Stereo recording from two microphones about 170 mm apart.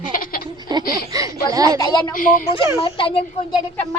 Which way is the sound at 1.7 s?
25° left (ahead or behind).